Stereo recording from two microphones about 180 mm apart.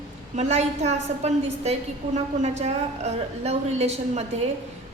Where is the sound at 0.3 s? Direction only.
40° right (ahead or behind).